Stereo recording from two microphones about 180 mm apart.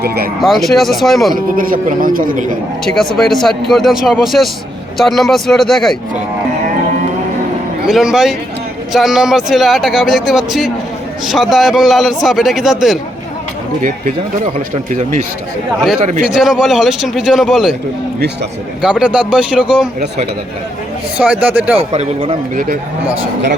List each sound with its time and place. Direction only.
0.0 s speech: 60° right (ahead or behind)
0.4 s speech: centre (ahead or behind)
1.3 s speech: 50° right (ahead or behind)
2.8 s speech: centre (ahead or behind)
7.9 s speech: centre (ahead or behind)
16.2 s speech: 5° right (ahead or behind)
18.8 s speech: 5° right (ahead or behind)
21.2 s speech: 10° right (ahead or behind)
21.8 s a man's voice: 35° right (ahead or behind)